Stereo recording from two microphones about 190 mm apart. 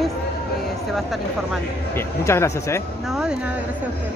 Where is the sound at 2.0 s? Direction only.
15° left (ahead or behind).